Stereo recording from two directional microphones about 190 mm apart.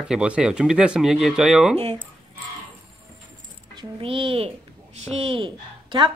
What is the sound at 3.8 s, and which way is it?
A woman's voice, 30° right (ahead or behind).